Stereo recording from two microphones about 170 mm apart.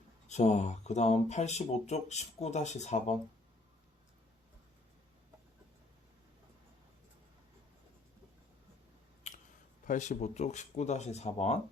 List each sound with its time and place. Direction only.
0.3 s speech: 45° left (ahead or behind)
9.8 s speech: 45° left (ahead or behind)